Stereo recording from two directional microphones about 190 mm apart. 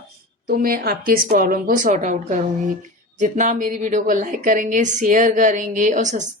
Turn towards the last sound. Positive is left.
turn(degrees=-40)  # may be behind; listen again after turning